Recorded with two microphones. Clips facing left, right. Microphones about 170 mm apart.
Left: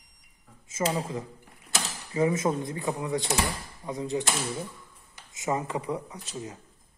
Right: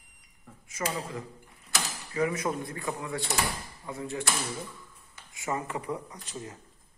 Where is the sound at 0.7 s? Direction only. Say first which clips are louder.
Left 5 dB; 25° left (ahead or behind).